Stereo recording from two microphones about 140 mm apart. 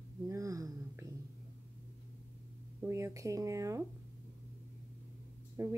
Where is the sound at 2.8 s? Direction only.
20° right (ahead or behind).